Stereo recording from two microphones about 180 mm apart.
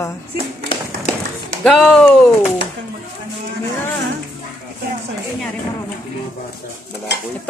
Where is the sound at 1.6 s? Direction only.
Centre (ahead or behind).